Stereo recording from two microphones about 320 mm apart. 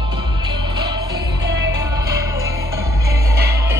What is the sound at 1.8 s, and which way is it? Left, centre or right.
Music, centre.